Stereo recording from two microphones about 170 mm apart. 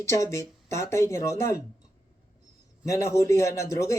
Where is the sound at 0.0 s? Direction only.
15° left (ahead or behind).